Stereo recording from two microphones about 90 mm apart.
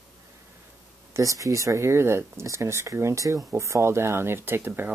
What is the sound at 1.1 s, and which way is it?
Speech, 35° right (ahead or behind).